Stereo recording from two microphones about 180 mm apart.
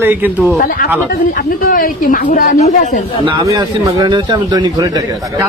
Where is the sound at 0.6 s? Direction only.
50° left (ahead or behind).